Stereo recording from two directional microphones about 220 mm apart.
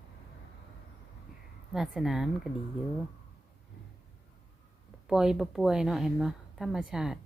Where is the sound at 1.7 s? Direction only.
Centre (ahead or behind).